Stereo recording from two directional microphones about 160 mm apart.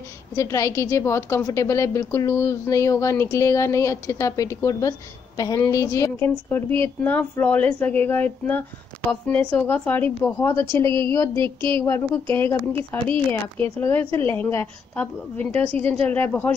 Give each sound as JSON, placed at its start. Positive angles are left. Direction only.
{"t": 0.4, "sound": "a woman's voice", "side_deg": 20}
{"t": 11.3, "sound": "a woman's voice", "side_deg": -30}
{"t": 11.8, "sound": "a woman's voice", "side_deg": 15}
{"t": 15.6, "sound": "a woman's voice", "side_deg": -35}
{"t": 16.1, "sound": "a woman's voice", "side_deg": 10}